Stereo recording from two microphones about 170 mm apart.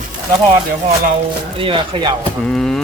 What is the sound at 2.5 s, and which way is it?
Speech, 5° left (ahead or behind).